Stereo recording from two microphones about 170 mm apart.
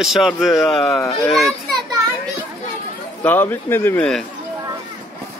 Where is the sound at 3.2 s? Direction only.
10° left (ahead or behind).